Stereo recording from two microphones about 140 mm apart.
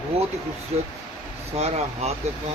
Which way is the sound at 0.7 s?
50° right (ahead or behind).